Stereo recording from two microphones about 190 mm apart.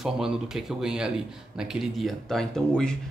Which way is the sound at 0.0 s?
Centre (ahead or behind).